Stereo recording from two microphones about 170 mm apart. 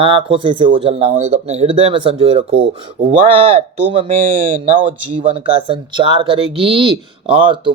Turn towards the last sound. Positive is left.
turn(degrees=-30)  # may be behind; listen again after turning